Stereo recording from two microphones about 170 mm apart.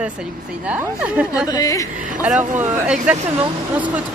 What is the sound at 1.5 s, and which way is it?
Speech, 20° left (ahead or behind).